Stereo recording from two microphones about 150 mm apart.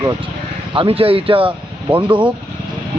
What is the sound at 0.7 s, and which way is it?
Speech, 40° right (ahead or behind).